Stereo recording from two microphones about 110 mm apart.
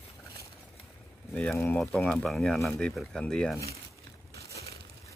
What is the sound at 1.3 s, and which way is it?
Speech, 5° left (ahead or behind).